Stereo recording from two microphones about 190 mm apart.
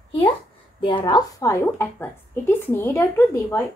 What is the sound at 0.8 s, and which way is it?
A woman's voice, 25° left (ahead or behind).